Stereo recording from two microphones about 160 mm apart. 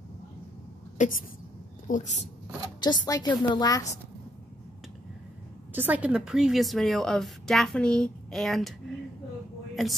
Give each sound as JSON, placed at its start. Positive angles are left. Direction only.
{"t": 1.0, "sound": "speech", "side_deg": 50}
{"t": 2.8, "sound": "a woman's voice", "side_deg": 25}
{"t": 5.7, "sound": "a woman's voice", "side_deg": -10}